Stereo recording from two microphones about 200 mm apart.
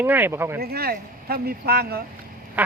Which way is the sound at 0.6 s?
50° right (ahead or behind).